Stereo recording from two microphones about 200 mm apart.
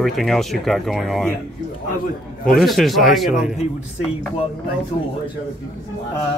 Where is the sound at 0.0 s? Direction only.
Centre (ahead or behind).